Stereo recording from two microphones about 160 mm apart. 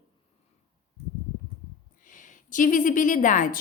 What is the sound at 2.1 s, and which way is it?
A woman's voice, 55° left (ahead or behind).